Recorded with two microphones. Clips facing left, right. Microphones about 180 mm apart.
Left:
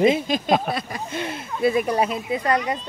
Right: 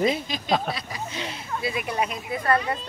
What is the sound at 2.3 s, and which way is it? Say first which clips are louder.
Speech: right 1 dB; 20° left (ahead or behind).